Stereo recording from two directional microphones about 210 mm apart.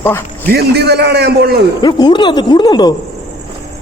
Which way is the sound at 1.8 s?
20° left (ahead or behind).